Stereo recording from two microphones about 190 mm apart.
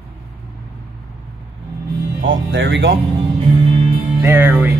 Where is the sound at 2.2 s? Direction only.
80° right; by 2.9 s 65° right (ahead or behind).